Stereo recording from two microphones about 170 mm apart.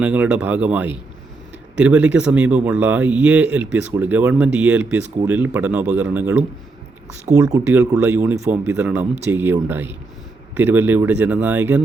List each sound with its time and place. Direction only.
0.0 s speech: 5° right (ahead or behind)
7.3 s speech: 20° right (ahead or behind)